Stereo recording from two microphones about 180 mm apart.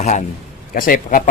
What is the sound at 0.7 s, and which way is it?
Speech, 50° left (ahead or behind).